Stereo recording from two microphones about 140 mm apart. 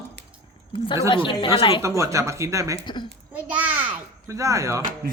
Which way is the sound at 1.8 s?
20° right (ahead or behind).